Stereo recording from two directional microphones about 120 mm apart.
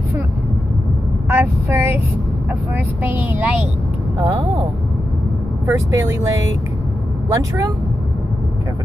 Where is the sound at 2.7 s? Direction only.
15° right (ahead or behind).